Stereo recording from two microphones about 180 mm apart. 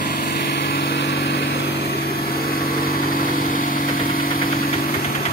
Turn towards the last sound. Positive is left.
turn(degrees=55)  # may be behind; listen again after turning